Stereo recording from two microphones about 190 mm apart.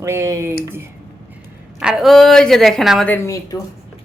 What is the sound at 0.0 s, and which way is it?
Speech, 15° right (ahead or behind).